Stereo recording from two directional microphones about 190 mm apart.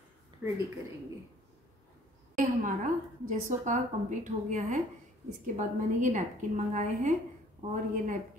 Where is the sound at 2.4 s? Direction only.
40° right (ahead or behind).